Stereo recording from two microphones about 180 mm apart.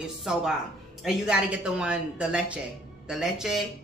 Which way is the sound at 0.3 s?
5° right (ahead or behind).